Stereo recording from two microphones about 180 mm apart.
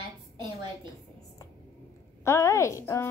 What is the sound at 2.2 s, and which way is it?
Speech, 15° left (ahead or behind).